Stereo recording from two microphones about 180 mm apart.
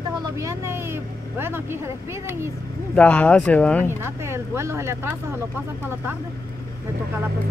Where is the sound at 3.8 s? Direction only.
15° right (ahead or behind).